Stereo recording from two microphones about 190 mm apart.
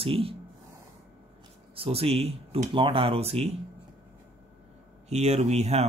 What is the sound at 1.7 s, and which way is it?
Speech, 30° right (ahead or behind).